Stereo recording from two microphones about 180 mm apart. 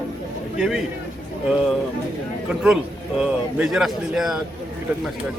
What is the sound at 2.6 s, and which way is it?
A man's voice, 5° right (ahead or behind).